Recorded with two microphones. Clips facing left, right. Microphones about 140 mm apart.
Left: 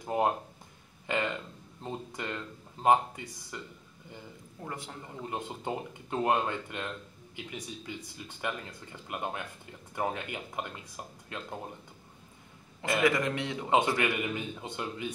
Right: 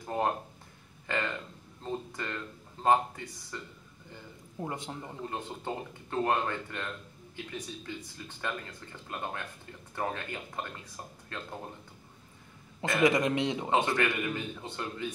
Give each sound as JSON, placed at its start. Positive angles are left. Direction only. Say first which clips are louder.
{"t": 0.0, "sound": "a sound", "louder": "left 2 dB", "side_deg": 15}
{"t": 1.0, "sound": "speech", "louder": "left 2 dB", "side_deg": 15}
{"t": 4.6, "sound": "speech", "louder": "right 4 dB", "side_deg": -20}
{"t": 5.3, "sound": "speech", "louder": "left 3 dB", "side_deg": 15}
{"t": 13.0, "sound": "speech", "louder": "right 4 dB", "side_deg": -20}
{"t": 13.7, "sound": "speech", "louder": "left 4 dB", "side_deg": 15}